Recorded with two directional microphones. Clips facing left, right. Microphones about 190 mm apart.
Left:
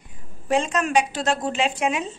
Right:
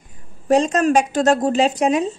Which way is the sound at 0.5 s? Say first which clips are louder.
Right 7 dB; 40° right (ahead or behind).